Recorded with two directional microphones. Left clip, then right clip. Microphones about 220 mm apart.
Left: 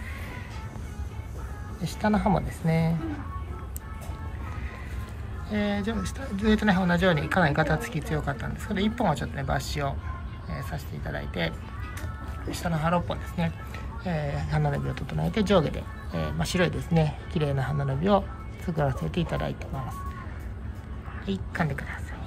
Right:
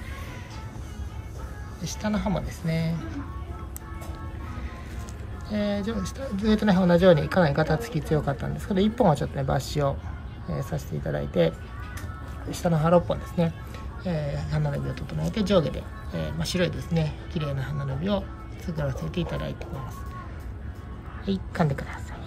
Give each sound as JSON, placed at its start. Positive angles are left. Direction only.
{"t": 1.8, "sound": "speech", "side_deg": 0}
{"t": 5.5, "sound": "speech", "side_deg": -10}
{"t": 12.6, "sound": "speech", "side_deg": -20}
{"t": 21.3, "sound": "speech", "side_deg": -10}